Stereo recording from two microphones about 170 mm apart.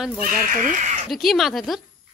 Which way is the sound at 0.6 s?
50° right (ahead or behind).